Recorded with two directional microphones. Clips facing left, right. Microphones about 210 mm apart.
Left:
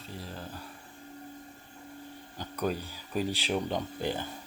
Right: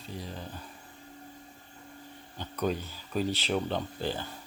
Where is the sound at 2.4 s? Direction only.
10° left (ahead or behind).